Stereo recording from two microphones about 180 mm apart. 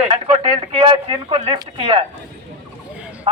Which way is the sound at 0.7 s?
30° right (ahead or behind).